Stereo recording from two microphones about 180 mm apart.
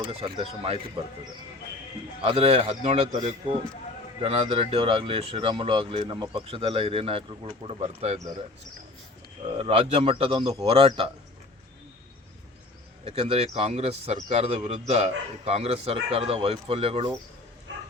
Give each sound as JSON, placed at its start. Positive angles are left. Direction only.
{"t": 0.0, "sound": "speech", "side_deg": -30}
{"t": 2.2, "sound": "speech", "side_deg": -35}
{"t": 4.2, "sound": "speech", "side_deg": -35}
{"t": 9.6, "sound": "speech", "side_deg": -35}
{"t": 13.1, "sound": "speech", "side_deg": -35}